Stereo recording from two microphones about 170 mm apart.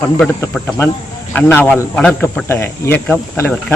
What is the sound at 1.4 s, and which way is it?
A man's voice, 10° left (ahead or behind).